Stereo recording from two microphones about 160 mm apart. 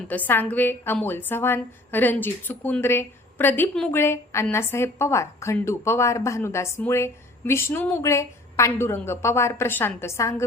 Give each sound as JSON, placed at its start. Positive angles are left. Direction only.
{"t": 0.1, "sound": "a woman's voice", "side_deg": 10}